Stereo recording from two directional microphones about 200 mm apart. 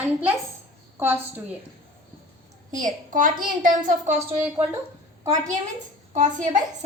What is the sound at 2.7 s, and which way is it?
A woman's voice, 40° right (ahead or behind).